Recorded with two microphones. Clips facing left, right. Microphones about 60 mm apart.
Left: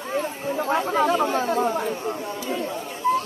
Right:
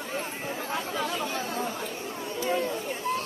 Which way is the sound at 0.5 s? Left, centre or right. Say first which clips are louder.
Left 11 dB; left.